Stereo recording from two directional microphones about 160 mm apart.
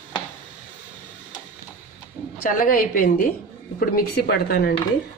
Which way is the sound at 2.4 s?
60° left (ahead or behind).